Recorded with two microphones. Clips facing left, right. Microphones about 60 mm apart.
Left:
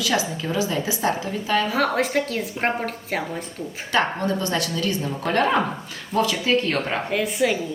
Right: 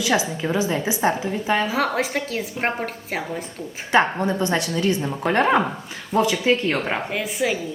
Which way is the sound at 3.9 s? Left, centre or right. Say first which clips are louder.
Right 3 dB; right.